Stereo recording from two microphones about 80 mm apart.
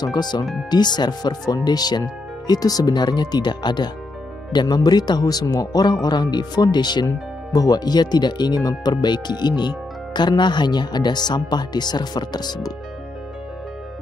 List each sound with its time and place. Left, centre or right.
0.0 s speech: left
7.1 s speech: left